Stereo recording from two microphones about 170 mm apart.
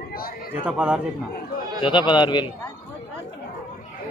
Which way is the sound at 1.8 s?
25° left (ahead or behind).